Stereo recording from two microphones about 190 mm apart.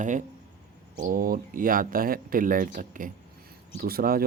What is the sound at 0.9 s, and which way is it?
Speech, 45° right (ahead or behind).